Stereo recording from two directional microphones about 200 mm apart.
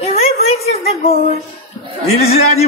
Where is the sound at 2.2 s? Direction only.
30° left (ahead or behind).